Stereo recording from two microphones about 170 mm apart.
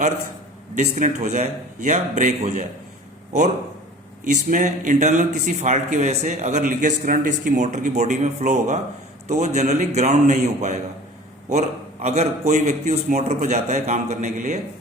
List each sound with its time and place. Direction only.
0.9 s speech: 45° right (ahead or behind)
4.3 s speech: 45° right (ahead or behind)
12.0 s a man's voice: 40° right (ahead or behind)